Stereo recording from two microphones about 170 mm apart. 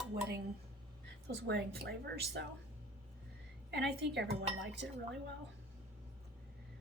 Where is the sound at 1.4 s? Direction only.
75° right (ahead or behind).